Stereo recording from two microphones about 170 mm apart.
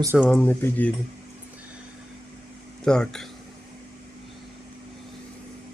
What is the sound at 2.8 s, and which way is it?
Speech, 5° left (ahead or behind).